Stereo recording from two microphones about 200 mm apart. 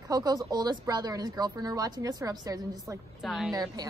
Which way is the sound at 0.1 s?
20° right (ahead or behind).